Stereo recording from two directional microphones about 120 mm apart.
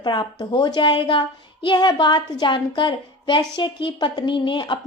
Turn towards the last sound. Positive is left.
turn(degrees=40)  # may be behind; listen again after turning